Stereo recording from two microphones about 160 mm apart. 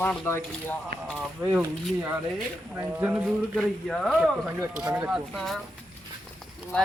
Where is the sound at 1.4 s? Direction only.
15° right (ahead or behind); by 5.6 s centre (ahead or behind).